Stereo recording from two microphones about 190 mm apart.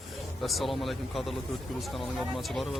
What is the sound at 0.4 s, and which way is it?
Speech, centre (ahead or behind).